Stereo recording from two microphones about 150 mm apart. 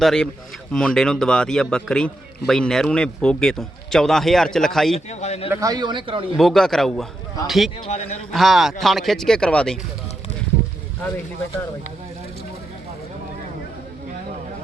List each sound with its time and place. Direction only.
0.0 s a man's voice: 5° left (ahead or behind)
4.9 s a man's voice: 50° left (ahead or behind)
5.5 s speech: 20° right (ahead or behind)
6.3 s a man's voice: centre (ahead or behind)
7.9 s a man's voice: 45° left (ahead or behind)
8.3 s a man's voice: centre (ahead or behind)